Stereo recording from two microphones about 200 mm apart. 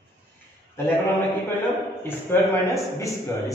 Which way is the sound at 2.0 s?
15° left (ahead or behind).